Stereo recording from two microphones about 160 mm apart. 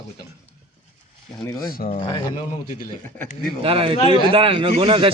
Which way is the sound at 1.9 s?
30° left (ahead or behind).